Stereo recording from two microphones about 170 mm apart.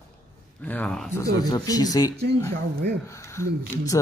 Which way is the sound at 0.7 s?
5° left (ahead or behind).